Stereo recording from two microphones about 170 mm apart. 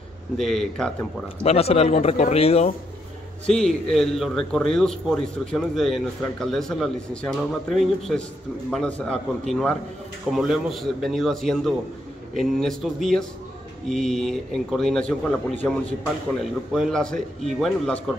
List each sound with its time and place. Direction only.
0.4 s a man's voice: centre (ahead or behind)
1.4 s speech: 35° left (ahead or behind)
3.4 s a man's voice: 5° left (ahead or behind)